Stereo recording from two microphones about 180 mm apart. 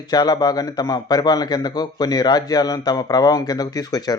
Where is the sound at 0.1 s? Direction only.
20° left (ahead or behind).